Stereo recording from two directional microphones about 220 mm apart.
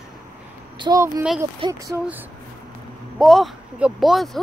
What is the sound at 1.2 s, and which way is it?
Speech, 5° right (ahead or behind).